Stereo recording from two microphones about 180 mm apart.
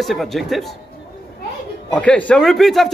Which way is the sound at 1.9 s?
5° left (ahead or behind).